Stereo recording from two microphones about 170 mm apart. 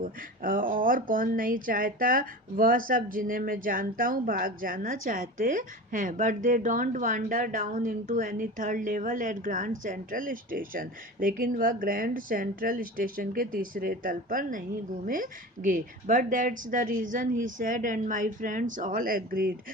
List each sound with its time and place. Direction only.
0.0 s speech: 55° right (ahead or behind)